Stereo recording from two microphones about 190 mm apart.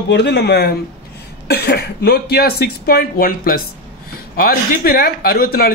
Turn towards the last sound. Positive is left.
turn(degrees=55)  # may be behind; listen again after turning